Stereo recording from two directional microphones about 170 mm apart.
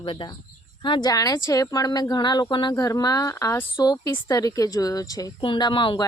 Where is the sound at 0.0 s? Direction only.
30° left (ahead or behind).